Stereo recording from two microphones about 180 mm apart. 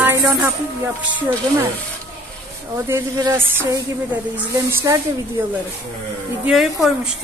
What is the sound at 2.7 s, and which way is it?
A woman's voice, 15° right (ahead or behind).